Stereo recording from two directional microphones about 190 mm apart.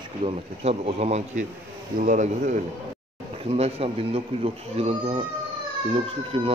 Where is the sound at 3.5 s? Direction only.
35° right (ahead or behind).